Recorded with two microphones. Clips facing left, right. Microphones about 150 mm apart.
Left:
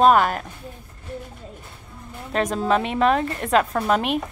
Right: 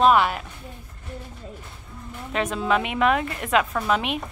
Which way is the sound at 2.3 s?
40° left (ahead or behind).